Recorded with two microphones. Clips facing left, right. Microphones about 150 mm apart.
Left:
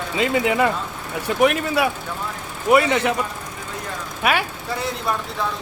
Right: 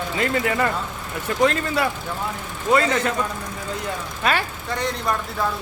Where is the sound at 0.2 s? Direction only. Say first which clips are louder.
Left 3 dB; 15° left (ahead or behind).